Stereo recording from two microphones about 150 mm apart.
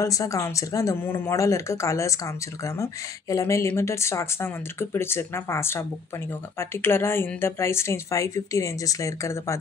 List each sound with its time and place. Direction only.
0.0 s a woman's voice: 20° left (ahead or behind)